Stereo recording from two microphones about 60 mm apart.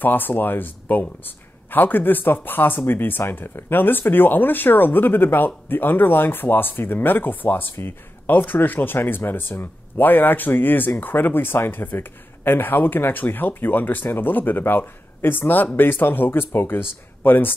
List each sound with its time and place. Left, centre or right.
0.0 s a man's voice: left